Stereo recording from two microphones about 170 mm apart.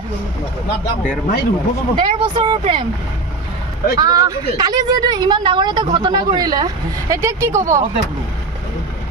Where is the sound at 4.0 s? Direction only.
20° right (ahead or behind).